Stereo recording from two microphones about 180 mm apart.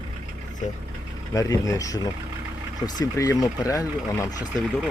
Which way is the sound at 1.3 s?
20° left (ahead or behind).